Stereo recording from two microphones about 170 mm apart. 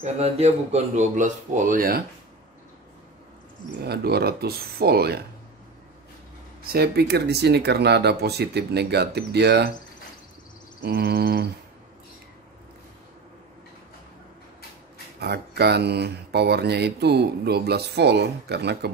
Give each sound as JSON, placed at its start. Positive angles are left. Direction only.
{"t": 0.0, "sound": "speech", "side_deg": -40}
{"t": 3.8, "sound": "speech", "side_deg": -70}
{"t": 6.6, "sound": "speech", "side_deg": -65}
{"t": 10.8, "sound": "speech", "side_deg": -70}
{"t": 15.1, "sound": "speech", "side_deg": -70}